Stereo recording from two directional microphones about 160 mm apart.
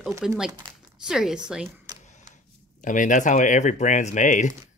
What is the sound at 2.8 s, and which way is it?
Speech, 55° left (ahead or behind).